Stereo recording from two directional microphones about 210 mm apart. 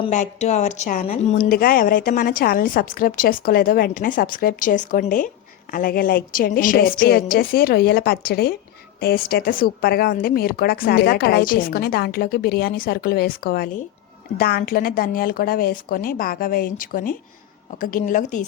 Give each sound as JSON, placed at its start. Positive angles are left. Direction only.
{"t": 0.0, "sound": "a woman's voice", "side_deg": 35}
{"t": 1.5, "sound": "a woman's voice", "side_deg": 45}